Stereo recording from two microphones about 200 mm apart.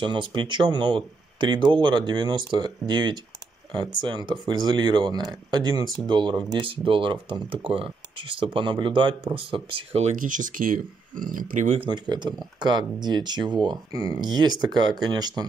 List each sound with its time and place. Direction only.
0.0 s speech: 25° right (ahead or behind)
11.9 s speech: 20° right (ahead or behind)